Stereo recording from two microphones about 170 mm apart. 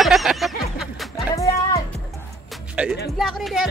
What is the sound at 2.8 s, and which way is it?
Speech, 5° right (ahead or behind).